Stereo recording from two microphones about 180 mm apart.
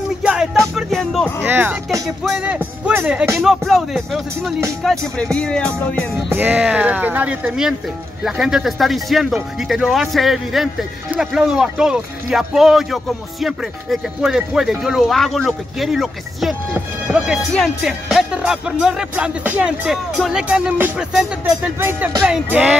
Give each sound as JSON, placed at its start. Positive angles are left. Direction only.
{"t": 0.2, "sound": "music", "side_deg": -5}
{"t": 1.4, "sound": "speech", "side_deg": -10}
{"t": 6.3, "sound": "speech", "side_deg": -10}